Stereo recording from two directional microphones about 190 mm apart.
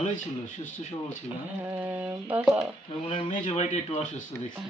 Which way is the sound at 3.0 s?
35° left (ahead or behind).